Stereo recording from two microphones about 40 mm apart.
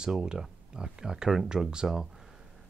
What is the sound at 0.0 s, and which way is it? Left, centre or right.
Speech, centre.